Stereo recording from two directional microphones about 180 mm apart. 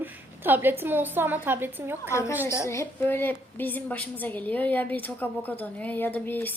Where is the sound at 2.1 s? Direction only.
15° left (ahead or behind).